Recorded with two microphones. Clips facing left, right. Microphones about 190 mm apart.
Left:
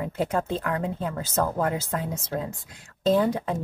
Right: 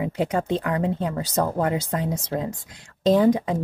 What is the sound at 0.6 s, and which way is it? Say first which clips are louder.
Speech: right 4 dB; 10° right (ahead or behind).